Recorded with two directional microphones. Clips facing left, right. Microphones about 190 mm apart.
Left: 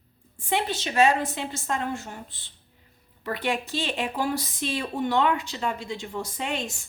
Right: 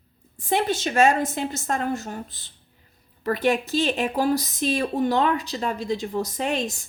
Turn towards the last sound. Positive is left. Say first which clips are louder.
# right 5 dB
turn(degrees=-40)  # may be behind; listen again after turning